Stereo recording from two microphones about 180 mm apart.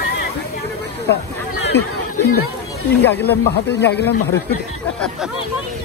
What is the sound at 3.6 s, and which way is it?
Speech, 70° left (ahead or behind).